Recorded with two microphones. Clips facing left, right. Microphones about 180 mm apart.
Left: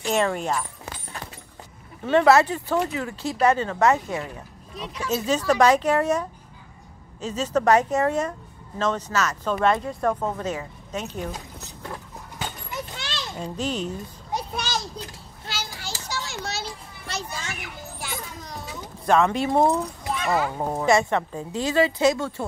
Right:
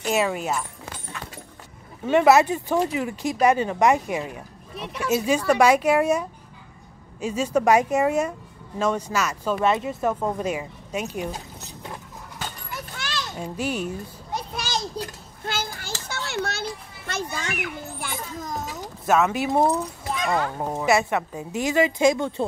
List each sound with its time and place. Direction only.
0.1 s speech: 5° right (ahead or behind)
2.0 s speech: 10° right (ahead or behind)
4.7 s speech: 60° right (ahead or behind)
5.1 s speech: 10° right (ahead or behind)
12.7 s children playing: 20° left (ahead or behind)
13.4 s speech: 10° right (ahead or behind)
15.4 s children playing: 50° right (ahead or behind)
19.0 s speech: 5° right (ahead or behind)
20.8 s speech: 5° right (ahead or behind)